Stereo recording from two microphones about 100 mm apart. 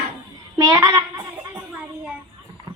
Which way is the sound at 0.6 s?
45° right (ahead or behind).